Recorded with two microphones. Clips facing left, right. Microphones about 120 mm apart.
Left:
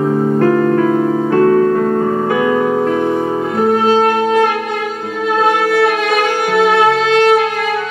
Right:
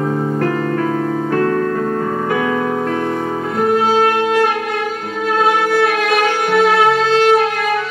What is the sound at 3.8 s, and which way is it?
Music, centre (ahead or behind).